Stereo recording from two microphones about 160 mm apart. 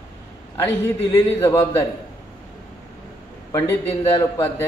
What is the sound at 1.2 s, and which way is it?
Speech, 15° left (ahead or behind).